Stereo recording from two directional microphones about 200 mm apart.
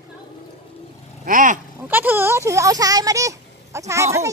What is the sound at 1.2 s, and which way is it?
Speech, 40° right (ahead or behind).